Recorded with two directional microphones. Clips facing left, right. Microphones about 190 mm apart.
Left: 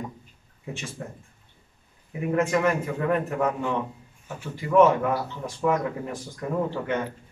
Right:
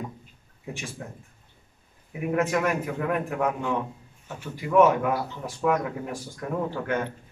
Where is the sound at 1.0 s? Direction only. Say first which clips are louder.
Left 2 dB; 5° right (ahead or behind).